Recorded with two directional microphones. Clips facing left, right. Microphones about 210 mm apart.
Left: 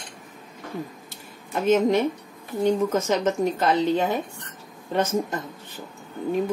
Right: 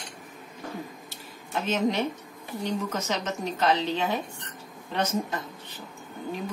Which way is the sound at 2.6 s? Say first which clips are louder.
Left 9 dB; 50° left (ahead or behind).